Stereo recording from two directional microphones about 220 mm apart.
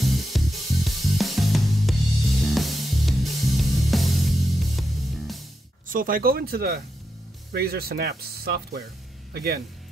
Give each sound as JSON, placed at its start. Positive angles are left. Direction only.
{"t": 0.0, "sound": "music", "side_deg": 0}
{"t": 5.9, "sound": "speech", "side_deg": -40}